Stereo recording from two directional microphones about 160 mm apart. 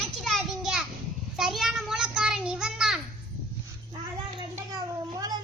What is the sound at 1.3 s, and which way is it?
Child singing, centre (ahead or behind).